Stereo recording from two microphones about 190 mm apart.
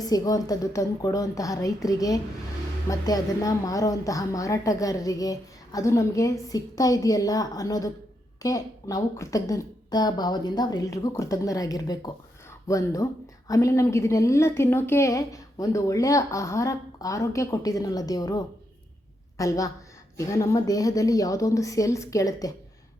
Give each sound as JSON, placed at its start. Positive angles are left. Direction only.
{"t": 0.0, "sound": "a woman's voice", "side_deg": 20}